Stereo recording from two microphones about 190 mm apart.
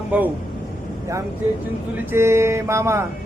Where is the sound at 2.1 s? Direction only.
15° right (ahead or behind).